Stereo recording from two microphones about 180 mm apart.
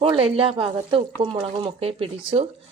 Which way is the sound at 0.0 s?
30° right (ahead or behind).